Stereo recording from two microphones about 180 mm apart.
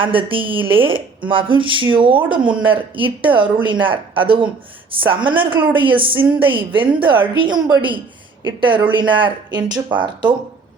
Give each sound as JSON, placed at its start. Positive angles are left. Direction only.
{"t": 0.0, "sound": "a woman's voice", "side_deg": -30}